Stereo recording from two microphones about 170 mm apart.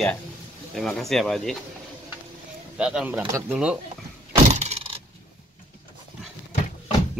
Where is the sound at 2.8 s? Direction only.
5° right (ahead or behind).